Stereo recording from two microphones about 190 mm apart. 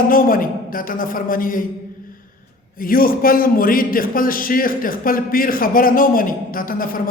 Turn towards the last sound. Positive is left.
turn(degrees=50)  # may be behind; listen again after turning